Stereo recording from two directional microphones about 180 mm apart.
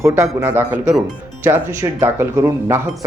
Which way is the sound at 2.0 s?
15° right (ahead or behind).